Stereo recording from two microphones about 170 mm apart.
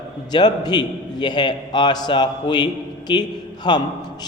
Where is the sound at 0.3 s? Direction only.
25° left (ahead or behind).